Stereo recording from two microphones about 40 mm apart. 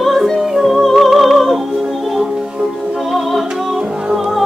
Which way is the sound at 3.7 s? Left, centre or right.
Centre.